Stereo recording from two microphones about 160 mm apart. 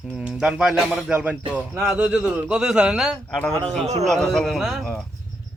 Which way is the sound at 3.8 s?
45° right (ahead or behind).